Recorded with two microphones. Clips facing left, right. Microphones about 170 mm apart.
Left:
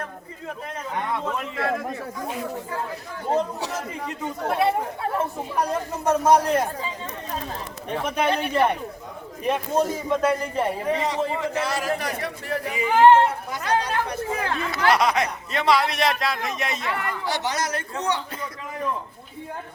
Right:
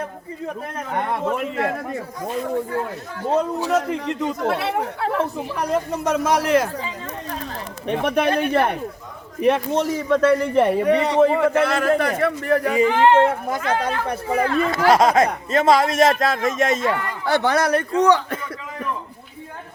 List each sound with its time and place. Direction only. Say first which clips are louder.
0.9 s a man's voice: right 4 dB; 55° right (ahead or behind)
1.3 s speech: right 4 dB; 45° right (ahead or behind)
3.7 s speech: right 10 dB; 70° right (ahead or behind)
5.7 s a man's voice: right 5 dB; 85° right
7.9 s a man's voice: right 4 dB; 65° right (ahead or behind)
9.4 s a man's voice: right 4 dB; 75° right (ahead or behind)